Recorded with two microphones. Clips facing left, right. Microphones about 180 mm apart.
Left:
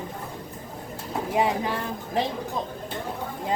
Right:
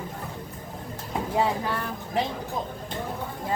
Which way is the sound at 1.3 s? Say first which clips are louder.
Left 2 dB; 15° left (ahead or behind).